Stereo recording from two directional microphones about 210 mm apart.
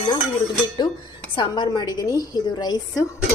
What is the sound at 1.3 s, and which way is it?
A woman's voice, 20° left (ahead or behind).